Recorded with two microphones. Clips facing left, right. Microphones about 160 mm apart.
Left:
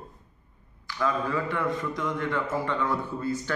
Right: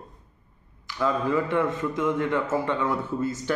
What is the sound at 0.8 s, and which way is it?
Speech, 15° right (ahead or behind).